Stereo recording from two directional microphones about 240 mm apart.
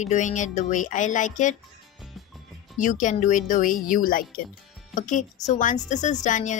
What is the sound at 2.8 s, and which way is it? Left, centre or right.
Speech, left.